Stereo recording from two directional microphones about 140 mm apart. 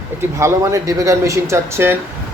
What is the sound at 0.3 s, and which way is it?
Speech, 20° right (ahead or behind).